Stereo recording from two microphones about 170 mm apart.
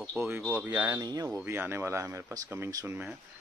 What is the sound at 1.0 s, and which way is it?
Speech, 20° right (ahead or behind).